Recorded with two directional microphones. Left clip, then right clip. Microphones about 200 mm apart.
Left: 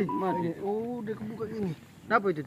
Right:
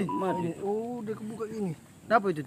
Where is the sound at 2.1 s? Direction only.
50° right (ahead or behind).